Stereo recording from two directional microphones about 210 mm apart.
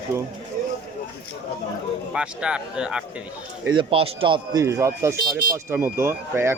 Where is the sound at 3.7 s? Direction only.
25° right (ahead or behind).